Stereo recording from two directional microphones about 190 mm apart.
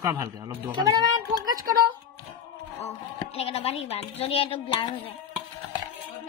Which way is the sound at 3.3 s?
30° left (ahead or behind).